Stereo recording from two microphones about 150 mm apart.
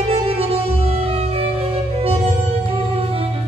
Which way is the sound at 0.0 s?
40° right (ahead or behind).